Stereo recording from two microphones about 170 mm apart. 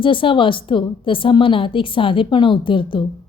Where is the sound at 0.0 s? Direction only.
30° left (ahead or behind).